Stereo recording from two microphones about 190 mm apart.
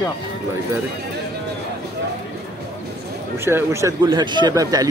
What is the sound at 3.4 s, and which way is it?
Speech, 15° right (ahead or behind).